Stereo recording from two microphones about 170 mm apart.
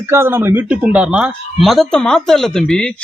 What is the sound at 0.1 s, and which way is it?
Speech, 15° right (ahead or behind).